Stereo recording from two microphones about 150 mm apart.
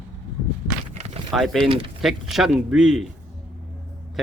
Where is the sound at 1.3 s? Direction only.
Centre (ahead or behind).